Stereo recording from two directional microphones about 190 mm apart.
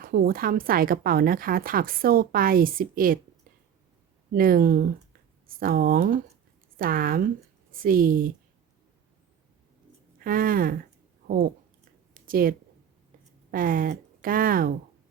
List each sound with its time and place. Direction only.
0.0 s a woman's voice: 50° right (ahead or behind)
4.3 s a woman's voice: 50° right (ahead or behind)
10.2 s a woman's voice: 50° right (ahead or behind)
12.1 s a sound: 50° right (ahead or behind)
13.5 s a woman's voice: 50° right (ahead or behind)